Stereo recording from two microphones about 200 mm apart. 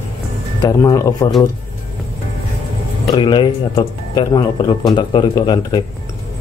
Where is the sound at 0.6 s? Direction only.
20° left (ahead or behind).